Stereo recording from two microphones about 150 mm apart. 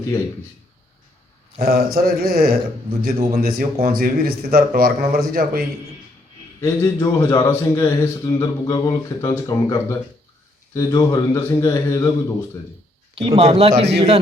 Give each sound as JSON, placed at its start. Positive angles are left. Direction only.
{"t": 1.6, "sound": "a man's voice", "side_deg": -85}
{"t": 6.6, "sound": "a man's voice", "side_deg": 20}
{"t": 13.1, "sound": "a man's voice", "side_deg": -40}